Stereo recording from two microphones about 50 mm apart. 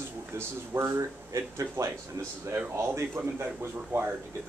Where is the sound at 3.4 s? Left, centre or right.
Right.